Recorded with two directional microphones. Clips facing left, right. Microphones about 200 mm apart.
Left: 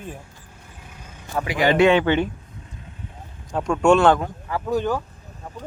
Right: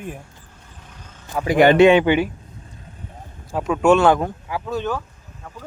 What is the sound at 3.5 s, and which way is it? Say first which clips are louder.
Speech: right 1 dB; 5° right (ahead or behind).